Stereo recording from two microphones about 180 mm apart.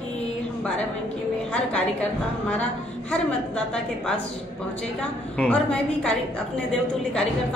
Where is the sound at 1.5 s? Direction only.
5° left (ahead or behind).